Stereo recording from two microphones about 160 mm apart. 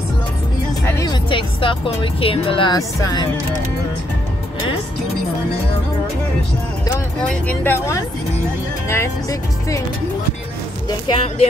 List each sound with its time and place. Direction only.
1.0 s speech: 30° left (ahead or behind)
7.2 s speech: 10° left (ahead or behind)
8.8 s speech: 15° left (ahead or behind)
10.9 s speech: 30° left (ahead or behind)